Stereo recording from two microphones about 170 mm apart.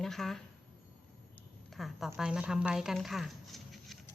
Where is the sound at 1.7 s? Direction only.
Centre (ahead or behind).